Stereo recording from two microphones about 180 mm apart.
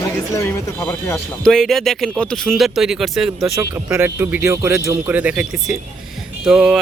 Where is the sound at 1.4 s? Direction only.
Centre (ahead or behind).